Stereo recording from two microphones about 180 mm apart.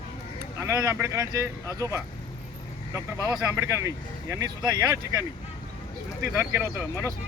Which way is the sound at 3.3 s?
15° right (ahead or behind).